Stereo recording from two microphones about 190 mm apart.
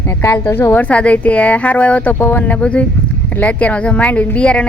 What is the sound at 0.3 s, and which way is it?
Speech, 15° left (ahead or behind).